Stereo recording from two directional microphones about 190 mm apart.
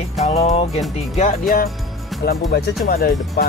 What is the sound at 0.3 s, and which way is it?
Music, 35° left (ahead or behind).